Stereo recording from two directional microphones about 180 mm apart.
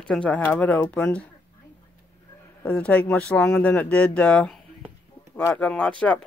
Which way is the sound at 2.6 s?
5° left (ahead or behind).